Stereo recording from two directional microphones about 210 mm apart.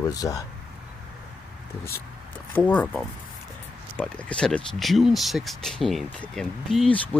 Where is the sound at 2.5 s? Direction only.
5° left (ahead or behind).